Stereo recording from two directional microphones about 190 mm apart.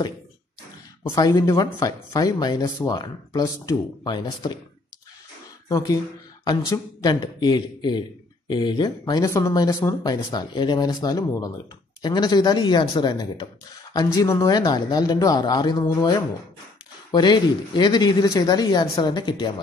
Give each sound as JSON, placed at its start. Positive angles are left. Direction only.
{"t": 1.0, "sound": "speech", "side_deg": 15}
{"t": 5.7, "sound": "speech", "side_deg": 20}